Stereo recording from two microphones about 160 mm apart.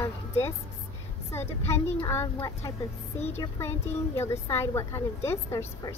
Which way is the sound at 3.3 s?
15° left (ahead or behind).